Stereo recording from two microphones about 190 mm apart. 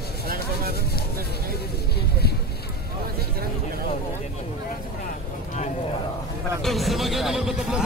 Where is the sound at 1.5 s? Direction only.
55° left (ahead or behind).